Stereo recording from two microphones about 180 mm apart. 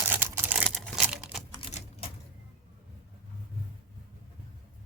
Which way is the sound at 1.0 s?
5° right (ahead or behind).